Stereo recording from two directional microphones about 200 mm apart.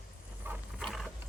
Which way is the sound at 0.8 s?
Centre (ahead or behind).